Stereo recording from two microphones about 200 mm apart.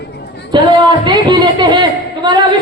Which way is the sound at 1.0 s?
20° right (ahead or behind).